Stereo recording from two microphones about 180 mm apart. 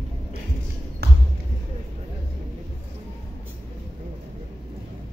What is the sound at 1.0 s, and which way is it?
Basketball bounce, 65° right (ahead or behind).